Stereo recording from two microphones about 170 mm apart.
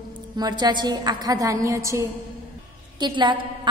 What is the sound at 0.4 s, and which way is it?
A woman's voice, 25° right (ahead or behind).